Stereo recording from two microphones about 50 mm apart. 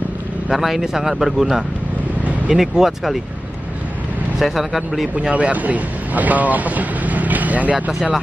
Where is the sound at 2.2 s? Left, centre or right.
Right.